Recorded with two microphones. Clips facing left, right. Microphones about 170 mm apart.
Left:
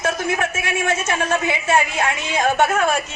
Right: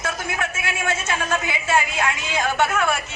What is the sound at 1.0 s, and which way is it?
Speech, 20° left (ahead or behind).